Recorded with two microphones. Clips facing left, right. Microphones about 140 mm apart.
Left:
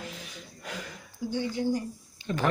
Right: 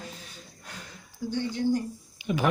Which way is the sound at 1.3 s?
10° left (ahead or behind).